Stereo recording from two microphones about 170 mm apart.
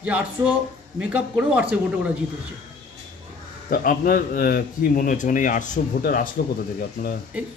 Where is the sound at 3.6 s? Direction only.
55° left (ahead or behind).